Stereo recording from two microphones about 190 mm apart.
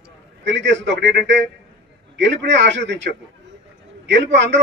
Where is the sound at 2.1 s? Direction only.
70° right (ahead or behind).